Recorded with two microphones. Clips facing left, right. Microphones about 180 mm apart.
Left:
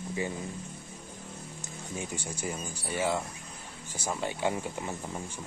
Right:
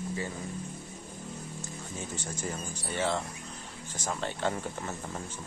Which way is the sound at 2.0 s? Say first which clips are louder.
Left 2 dB; 10° left (ahead or behind).